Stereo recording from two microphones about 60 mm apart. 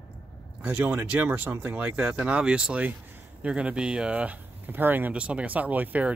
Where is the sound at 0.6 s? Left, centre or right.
Right.